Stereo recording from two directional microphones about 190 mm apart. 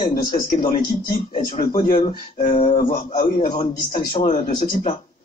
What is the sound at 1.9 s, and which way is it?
Speech, 30° left (ahead or behind).